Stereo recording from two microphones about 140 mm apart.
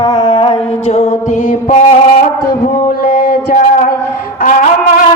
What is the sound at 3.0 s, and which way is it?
Music, 90° left.